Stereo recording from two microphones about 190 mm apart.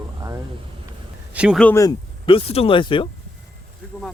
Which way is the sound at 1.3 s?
5° right (ahead or behind).